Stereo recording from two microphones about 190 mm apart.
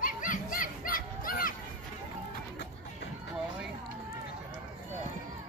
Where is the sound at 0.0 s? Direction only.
45° left (ahead or behind).